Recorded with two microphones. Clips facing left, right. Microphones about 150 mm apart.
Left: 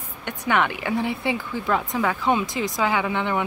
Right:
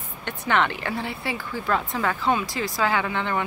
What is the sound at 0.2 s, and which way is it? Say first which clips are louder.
Speech: left 1 dB; 10° left (ahead or behind).